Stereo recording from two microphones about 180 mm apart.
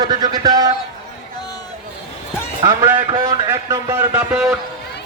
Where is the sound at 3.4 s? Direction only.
15° right (ahead or behind).